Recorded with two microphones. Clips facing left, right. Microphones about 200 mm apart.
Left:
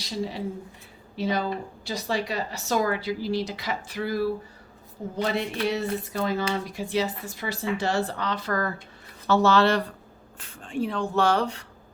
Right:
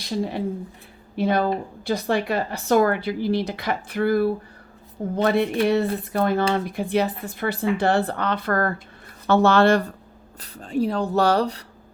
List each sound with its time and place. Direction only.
0.0 s a woman's voice: 55° right (ahead or behind)
10.4 s speech: 40° right (ahead or behind)